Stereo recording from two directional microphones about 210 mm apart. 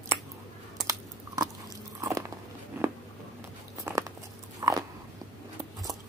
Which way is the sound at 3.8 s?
15° right (ahead or behind).